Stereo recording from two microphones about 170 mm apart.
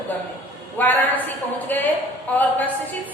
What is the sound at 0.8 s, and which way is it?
A woman's voice, 10° left (ahead or behind).